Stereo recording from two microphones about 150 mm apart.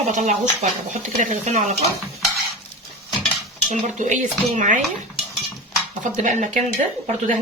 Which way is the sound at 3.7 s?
55° right (ahead or behind).